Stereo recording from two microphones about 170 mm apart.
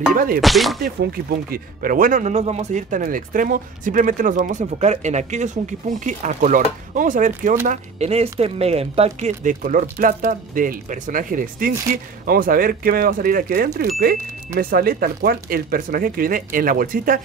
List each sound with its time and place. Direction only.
0.1 s speech: 55° right (ahead or behind)
0.4 s speech: centre (ahead or behind)
0.7 s speech: 60° right (ahead or behind)